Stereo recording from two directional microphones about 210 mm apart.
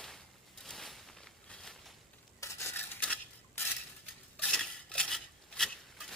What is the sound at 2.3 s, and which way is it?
Stir, 15° left (ahead or behind).